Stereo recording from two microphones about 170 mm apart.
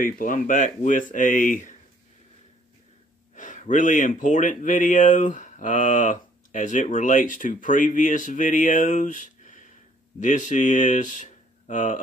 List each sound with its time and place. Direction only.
0.0 s speech: 55° left (ahead or behind)
3.3 s speech: 50° left (ahead or behind)